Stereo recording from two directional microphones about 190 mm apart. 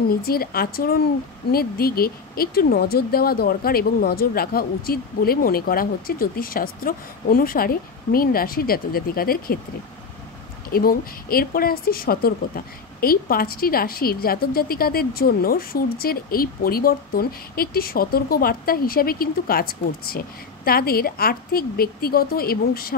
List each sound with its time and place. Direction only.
0.1 s a woman's voice: 50° left (ahead or behind)
10.7 s a woman's voice: 50° left (ahead or behind)